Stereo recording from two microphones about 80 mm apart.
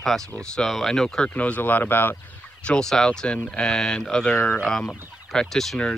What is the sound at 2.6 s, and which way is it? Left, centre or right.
Speech, centre.